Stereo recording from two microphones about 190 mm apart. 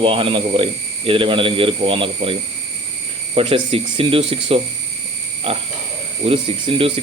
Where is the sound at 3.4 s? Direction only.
30° right (ahead or behind).